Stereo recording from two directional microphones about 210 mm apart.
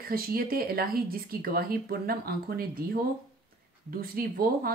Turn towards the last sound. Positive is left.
turn(degrees=-45)  # may be behind; listen again after turning